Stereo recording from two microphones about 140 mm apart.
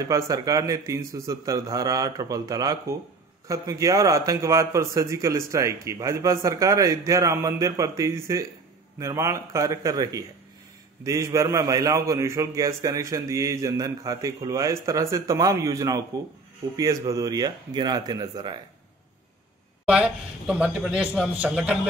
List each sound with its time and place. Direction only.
0.0 s a man's voice: 25° right (ahead or behind)
19.9 s a man's voice: 5° right (ahead or behind)